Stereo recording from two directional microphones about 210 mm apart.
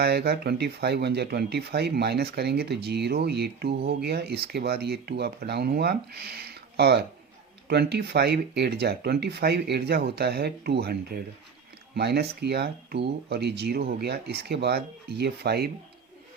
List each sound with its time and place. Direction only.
0.0 s speech: 50° right (ahead or behind)